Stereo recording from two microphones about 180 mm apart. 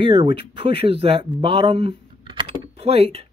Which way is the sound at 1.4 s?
30° right (ahead or behind).